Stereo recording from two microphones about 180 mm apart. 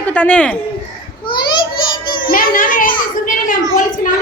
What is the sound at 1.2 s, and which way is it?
Children playing, 25° left (ahead or behind).